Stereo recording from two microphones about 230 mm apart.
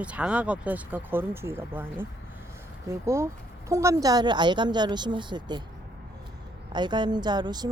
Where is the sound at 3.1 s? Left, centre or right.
Centre.